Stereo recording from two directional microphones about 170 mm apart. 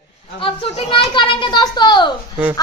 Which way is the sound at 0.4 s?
30° left (ahead or behind).